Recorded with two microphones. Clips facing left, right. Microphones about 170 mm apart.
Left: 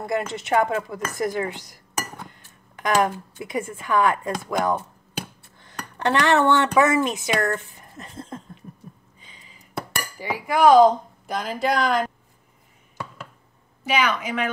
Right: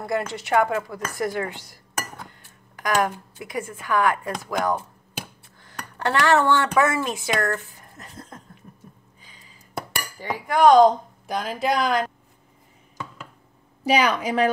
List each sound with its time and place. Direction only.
0.3 s speech: 20° left (ahead or behind)
9.2 s a sound: 20° left (ahead or behind)
10.1 s speech: 10° left (ahead or behind)
13.8 s a woman's voice: 35° right (ahead or behind)